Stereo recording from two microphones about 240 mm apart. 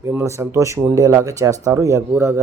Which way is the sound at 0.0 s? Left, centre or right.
Centre.